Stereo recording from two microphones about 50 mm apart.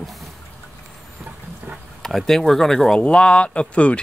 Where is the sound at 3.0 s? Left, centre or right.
Left.